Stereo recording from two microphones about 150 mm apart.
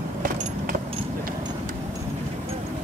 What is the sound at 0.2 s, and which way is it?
Vehicle, 60° right (ahead or behind).